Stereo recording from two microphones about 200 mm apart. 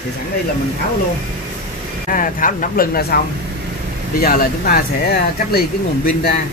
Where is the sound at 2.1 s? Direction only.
45° left (ahead or behind).